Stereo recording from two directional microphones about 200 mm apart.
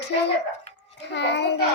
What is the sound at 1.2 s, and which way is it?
Speech, 60° left (ahead or behind).